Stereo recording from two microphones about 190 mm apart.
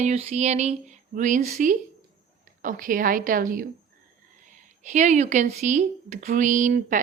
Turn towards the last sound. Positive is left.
turn(degrees=-45)  # may be behind; listen again after turning